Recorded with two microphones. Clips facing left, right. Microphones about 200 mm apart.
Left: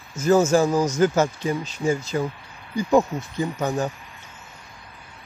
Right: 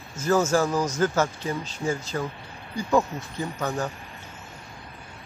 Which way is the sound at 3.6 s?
20° left (ahead or behind).